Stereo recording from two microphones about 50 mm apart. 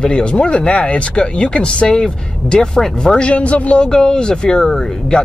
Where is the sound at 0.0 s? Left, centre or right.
Left.